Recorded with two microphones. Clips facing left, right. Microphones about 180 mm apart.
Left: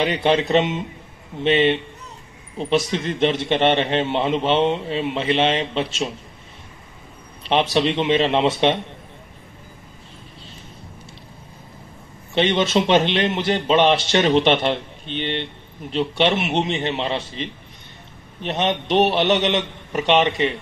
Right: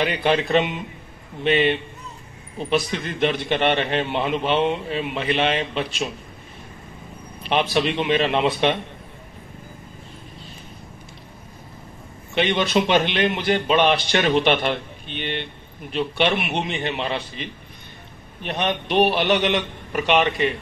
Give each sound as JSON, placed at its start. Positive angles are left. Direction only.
{"t": 0.0, "sound": "a man's voice", "side_deg": 25}
{"t": 7.4, "sound": "a man's voice", "side_deg": 25}
{"t": 12.4, "sound": "a man's voice", "side_deg": 25}
{"t": 18.4, "sound": "a man's voice", "side_deg": 25}